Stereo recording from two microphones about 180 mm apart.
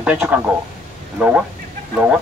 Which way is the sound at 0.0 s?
5° right (ahead or behind).